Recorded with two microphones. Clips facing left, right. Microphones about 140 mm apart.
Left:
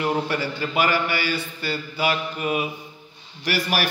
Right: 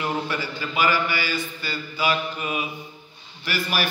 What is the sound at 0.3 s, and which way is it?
A man's voice, 60° left (ahead or behind).